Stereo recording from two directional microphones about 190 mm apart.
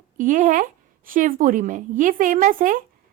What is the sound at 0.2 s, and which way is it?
Speech, 45° right (ahead or behind).